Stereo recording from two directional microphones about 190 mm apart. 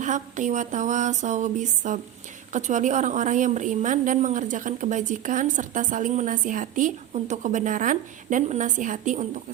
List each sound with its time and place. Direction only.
0.0 s a woman's voice: 40° right (ahead or behind)